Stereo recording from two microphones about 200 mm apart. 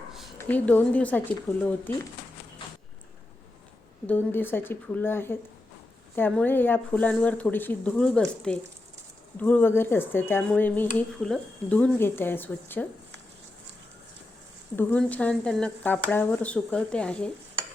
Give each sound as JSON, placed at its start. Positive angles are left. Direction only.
{"t": 0.1, "sound": "a sound", "side_deg": 0}
{"t": 0.3, "sound": "speech", "side_deg": 10}
{"t": 4.0, "sound": "speech", "side_deg": 10}
{"t": 14.8, "sound": "speech", "side_deg": 10}